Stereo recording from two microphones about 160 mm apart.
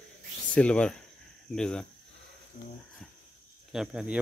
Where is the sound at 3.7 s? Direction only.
5° right (ahead or behind).